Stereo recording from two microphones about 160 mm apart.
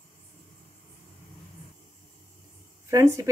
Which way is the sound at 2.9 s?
20° right (ahead or behind).